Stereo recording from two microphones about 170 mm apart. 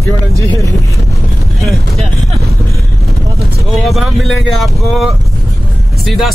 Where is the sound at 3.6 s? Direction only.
Centre (ahead or behind).